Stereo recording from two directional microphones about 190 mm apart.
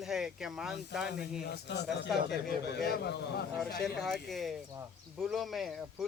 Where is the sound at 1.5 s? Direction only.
60° left (ahead or behind).